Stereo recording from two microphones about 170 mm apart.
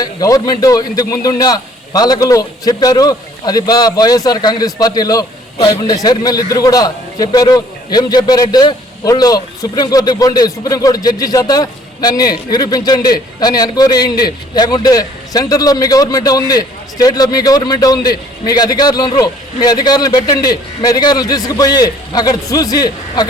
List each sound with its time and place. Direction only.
0.0 s a man's voice: 20° left (ahead or behind)